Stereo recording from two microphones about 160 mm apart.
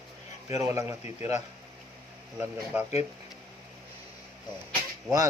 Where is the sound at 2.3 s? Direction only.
10° right (ahead or behind).